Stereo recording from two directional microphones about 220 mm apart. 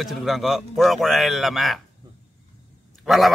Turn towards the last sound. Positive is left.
turn(degrees=0)  # may be behind; listen again after turning